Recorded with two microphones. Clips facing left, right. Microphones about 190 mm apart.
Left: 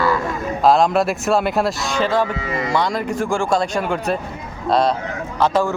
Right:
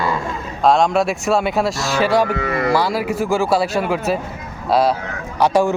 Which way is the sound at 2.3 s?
60° right (ahead or behind).